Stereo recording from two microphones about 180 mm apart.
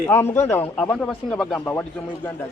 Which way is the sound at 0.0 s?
15° left (ahead or behind).